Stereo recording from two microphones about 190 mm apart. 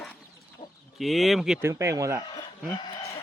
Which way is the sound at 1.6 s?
15° right (ahead or behind).